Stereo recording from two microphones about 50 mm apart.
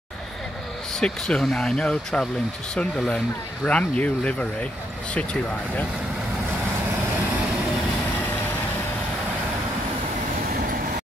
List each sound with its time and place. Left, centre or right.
0.9 s speech: centre